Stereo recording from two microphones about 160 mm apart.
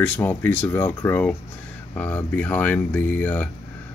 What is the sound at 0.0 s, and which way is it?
Speech, 15° left (ahead or behind).